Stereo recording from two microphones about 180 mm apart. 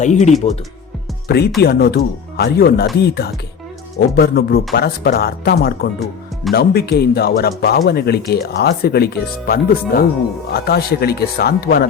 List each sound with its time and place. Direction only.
0.0 s speech: 40° left (ahead or behind)
1.3 s speech: 65° left (ahead or behind)